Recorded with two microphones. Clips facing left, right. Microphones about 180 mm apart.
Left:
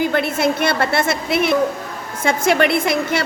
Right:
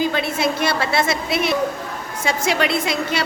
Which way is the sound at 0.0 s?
55° left (ahead or behind).